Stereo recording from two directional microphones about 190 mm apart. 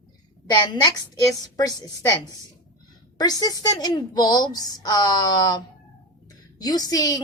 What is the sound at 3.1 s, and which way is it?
A woman's voice, 20° left (ahead or behind).